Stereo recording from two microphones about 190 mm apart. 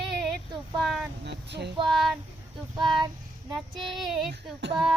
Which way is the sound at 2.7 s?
25° right (ahead or behind).